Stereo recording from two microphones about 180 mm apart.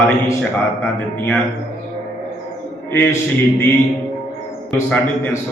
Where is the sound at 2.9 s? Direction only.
10° left (ahead or behind).